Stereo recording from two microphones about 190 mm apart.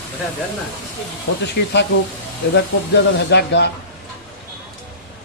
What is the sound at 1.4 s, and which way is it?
Speech, 65° left (ahead or behind).